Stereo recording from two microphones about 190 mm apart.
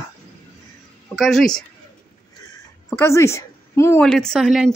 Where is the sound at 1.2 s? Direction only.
Centre (ahead or behind).